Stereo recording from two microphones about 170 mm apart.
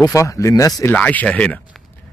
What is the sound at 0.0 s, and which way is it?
Speech, 20° left (ahead or behind).